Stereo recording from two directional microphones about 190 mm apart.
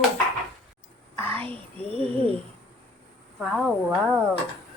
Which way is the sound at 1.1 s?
10° left (ahead or behind).